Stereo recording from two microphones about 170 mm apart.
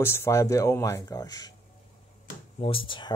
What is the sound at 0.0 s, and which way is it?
Speech, 15° left (ahead or behind).